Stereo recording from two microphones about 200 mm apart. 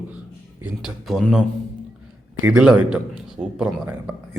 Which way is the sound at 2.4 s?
5° right (ahead or behind).